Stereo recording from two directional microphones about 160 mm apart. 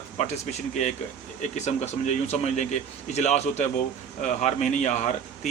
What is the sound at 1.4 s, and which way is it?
Speech, 45° left (ahead or behind).